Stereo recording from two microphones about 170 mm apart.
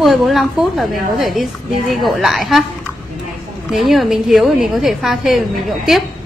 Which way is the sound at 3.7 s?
Centre (ahead or behind).